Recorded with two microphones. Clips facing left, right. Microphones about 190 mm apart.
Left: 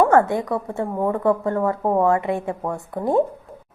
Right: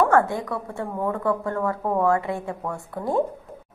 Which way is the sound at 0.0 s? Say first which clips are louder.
Left 3 dB; 20° left (ahead or behind).